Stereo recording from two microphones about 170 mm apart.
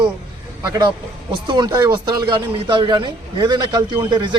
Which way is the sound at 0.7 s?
25° right (ahead or behind).